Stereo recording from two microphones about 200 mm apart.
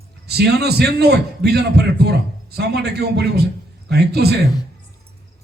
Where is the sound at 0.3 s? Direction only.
55° right (ahead or behind).